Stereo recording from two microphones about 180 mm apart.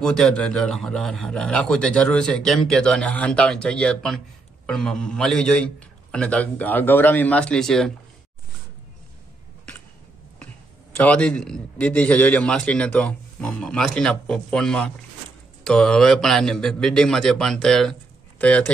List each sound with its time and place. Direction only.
0.0 s a man's voice: 5° left (ahead or behind)
11.0 s a man's voice: 5° left (ahead or behind)